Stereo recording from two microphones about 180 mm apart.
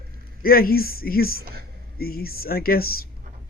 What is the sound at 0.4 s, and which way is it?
Speech, 55° left (ahead or behind).